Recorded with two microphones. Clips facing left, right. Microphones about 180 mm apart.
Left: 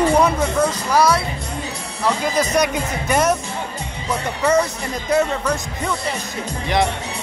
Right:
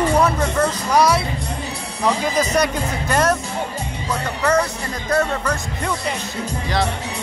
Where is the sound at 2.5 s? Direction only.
15° left (ahead or behind).